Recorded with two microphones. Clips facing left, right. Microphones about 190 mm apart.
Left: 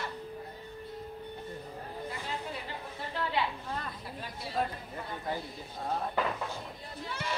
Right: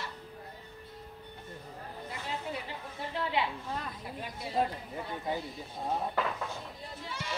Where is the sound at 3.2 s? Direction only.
20° right (ahead or behind).